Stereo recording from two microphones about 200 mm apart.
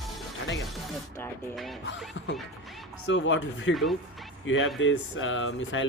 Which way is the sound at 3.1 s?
70° left (ahead or behind).